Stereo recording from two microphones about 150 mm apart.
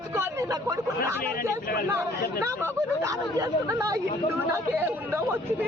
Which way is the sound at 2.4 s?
20° right (ahead or behind).